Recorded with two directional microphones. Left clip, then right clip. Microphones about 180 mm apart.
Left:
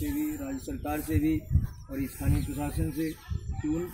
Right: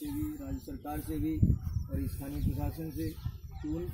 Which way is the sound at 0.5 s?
20° left (ahead or behind).